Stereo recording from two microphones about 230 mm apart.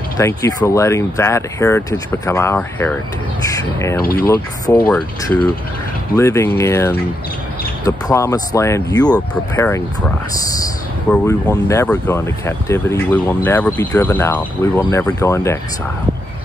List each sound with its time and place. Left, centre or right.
0.2 s speech: centre
4.0 s speech: left
4.3 s speech: centre
11.1 s speech: centre